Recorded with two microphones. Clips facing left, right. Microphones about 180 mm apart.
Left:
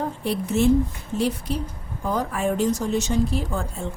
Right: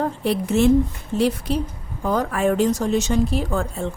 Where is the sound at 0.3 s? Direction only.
85° right; by 3.7 s 70° right (ahead or behind).